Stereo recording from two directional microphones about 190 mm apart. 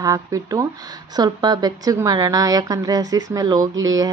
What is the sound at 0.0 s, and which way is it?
A woman's voice, 15° right (ahead or behind).